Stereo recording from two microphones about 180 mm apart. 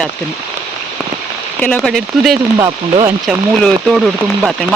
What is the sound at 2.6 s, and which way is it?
Speech, 25° right (ahead or behind).